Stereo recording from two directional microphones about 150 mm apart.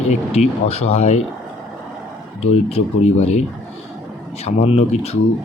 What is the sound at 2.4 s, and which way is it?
Speech, 45° left (ahead or behind).